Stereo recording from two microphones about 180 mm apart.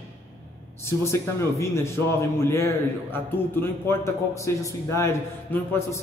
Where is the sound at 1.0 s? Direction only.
15° left (ahead or behind).